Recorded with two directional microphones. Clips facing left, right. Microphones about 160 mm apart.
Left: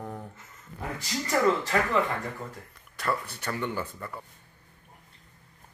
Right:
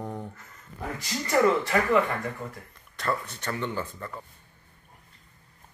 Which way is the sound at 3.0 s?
10° left (ahead or behind).